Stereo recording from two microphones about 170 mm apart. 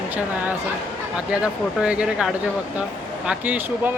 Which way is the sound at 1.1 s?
5° right (ahead or behind).